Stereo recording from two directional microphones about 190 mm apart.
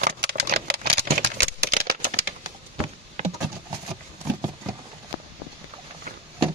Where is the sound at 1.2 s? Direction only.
65° right (ahead or behind).